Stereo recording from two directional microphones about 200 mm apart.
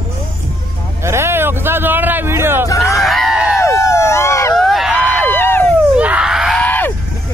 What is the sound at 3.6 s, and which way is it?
Vehicle, 15° left (ahead or behind).